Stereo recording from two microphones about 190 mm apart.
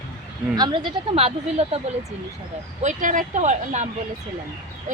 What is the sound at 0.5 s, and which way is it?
Speech, 20° right (ahead or behind).